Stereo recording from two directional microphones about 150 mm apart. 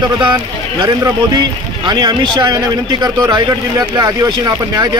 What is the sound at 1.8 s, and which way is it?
A man's voice, 30° right (ahead or behind).